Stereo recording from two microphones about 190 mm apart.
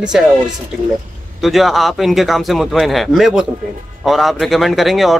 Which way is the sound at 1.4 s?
Centre (ahead or behind).